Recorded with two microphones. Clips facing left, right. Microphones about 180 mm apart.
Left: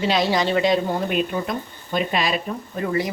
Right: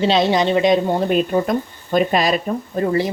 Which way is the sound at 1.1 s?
40° right (ahead or behind).